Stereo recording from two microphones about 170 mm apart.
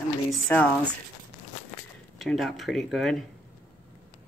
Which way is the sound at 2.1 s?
Centre (ahead or behind).